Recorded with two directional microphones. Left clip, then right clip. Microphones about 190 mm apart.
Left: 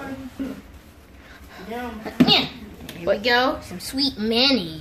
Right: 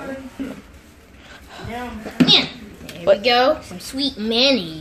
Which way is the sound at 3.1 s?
5° right (ahead or behind).